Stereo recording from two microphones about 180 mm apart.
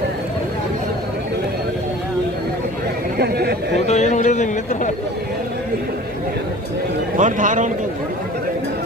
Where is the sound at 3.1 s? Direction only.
60° right (ahead or behind).